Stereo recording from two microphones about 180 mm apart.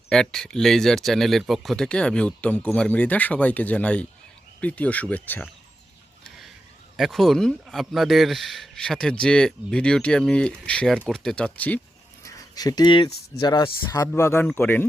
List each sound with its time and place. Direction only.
0.1 s speech: 5° left (ahead or behind)
6.9 s speech: centre (ahead or behind)
12.2 s a sound: 20° left (ahead or behind)
13.3 s speech: 25° left (ahead or behind)